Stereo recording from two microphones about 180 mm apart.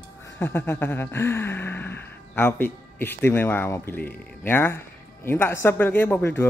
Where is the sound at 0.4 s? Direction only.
10° left (ahead or behind).